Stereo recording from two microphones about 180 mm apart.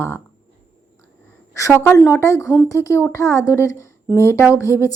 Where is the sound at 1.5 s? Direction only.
15° left (ahead or behind).